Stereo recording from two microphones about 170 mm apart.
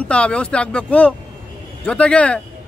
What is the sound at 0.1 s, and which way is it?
A man's voice, 5° left (ahead or behind).